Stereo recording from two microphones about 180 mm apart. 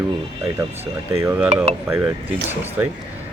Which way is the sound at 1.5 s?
35° right (ahead or behind).